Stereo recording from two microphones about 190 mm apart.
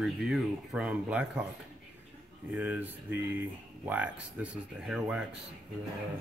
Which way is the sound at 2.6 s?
10° right (ahead or behind).